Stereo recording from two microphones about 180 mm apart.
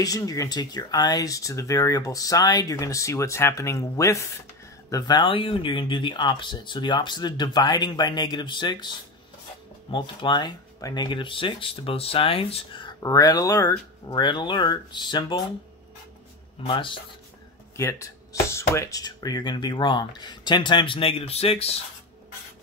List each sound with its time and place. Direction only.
0.0 s speech: 20° left (ahead or behind)
16.6 s speech: 25° left (ahead or behind)
17.7 s speech: 15° left (ahead or behind); by 21.7 s 35° left (ahead or behind)